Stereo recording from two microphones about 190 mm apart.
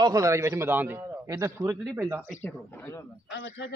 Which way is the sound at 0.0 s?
15° right (ahead or behind).